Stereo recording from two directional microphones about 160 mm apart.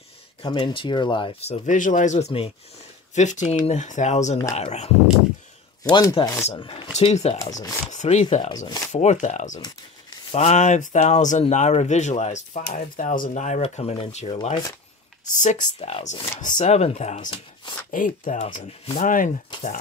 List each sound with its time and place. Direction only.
0.4 s speech: 30° left (ahead or behind)
1.7 s speech: 50° left (ahead or behind)
5.9 s speech: 25° left (ahead or behind)
6.9 s speech: 45° left (ahead or behind)
7.3 s speech: 20° left (ahead or behind)
7.9 s speech: 45° left (ahead or behind)
8.5 s speech: 25° left (ahead or behind)
8.9 s speech: 45° left (ahead or behind)
15.2 s speech: 50° left (ahead or behind)
17.2 s speech: 30° left (ahead or behind)
17.9 s speech: 55° left (ahead or behind)